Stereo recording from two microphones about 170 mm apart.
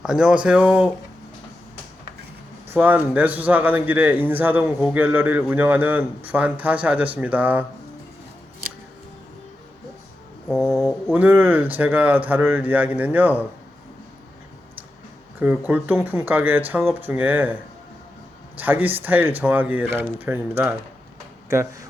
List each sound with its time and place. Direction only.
0.0 s speech: 5° right (ahead or behind)
2.6 s a man's voice: 10° right (ahead or behind)
10.5 s mantra: centre (ahead or behind)
11.1 s a man's voice: 10° right (ahead or behind)
15.4 s a man's voice: 10° right (ahead or behind)
18.6 s a man's voice: 10° right (ahead or behind)